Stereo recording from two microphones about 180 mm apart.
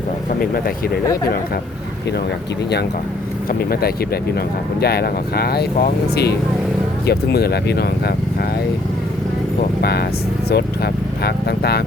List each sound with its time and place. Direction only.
1.1 s speech: 60° left (ahead or behind)
3.7 s speech: 60° left (ahead or behind)
9.8 s speech: 65° left (ahead or behind)